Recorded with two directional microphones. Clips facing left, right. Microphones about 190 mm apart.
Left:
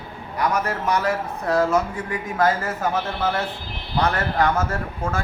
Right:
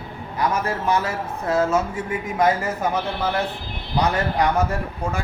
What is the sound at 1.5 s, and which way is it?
A man's voice, 25° right (ahead or behind).